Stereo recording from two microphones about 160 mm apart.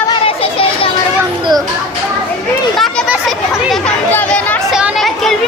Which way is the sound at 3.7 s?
10° left (ahead or behind).